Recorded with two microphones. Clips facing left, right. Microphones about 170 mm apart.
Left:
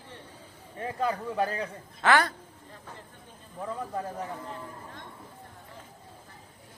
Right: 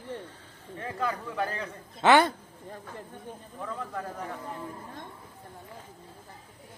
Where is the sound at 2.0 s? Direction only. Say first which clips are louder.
Right 3 dB; 25° right (ahead or behind).